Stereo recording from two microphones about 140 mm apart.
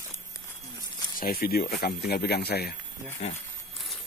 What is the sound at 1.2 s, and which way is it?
Speech, 90° left.